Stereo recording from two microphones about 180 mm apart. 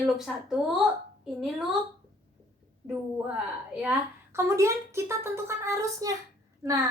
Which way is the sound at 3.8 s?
10° right (ahead or behind).